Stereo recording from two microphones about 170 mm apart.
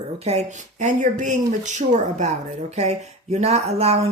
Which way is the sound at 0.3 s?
40° right (ahead or behind).